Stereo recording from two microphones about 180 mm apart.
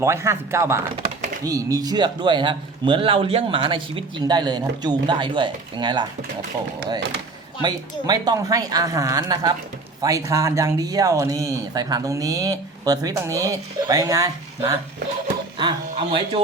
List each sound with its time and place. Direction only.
0.0 s speech: 15° right (ahead or behind)
7.6 s speech: 20° right (ahead or behind)